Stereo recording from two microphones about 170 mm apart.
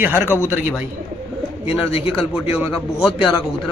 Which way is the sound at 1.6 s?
35° left (ahead or behind).